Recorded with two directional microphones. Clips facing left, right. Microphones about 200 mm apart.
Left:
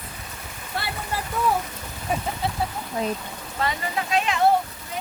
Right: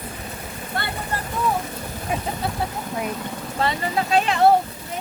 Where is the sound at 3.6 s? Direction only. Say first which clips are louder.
Right 3 dB; 35° right (ahead or behind).